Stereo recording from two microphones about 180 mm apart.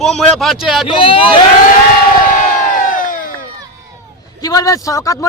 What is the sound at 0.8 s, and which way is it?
Speech, 30° left (ahead or behind).